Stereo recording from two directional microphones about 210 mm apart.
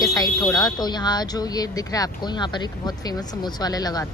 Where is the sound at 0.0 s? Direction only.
15° left (ahead or behind).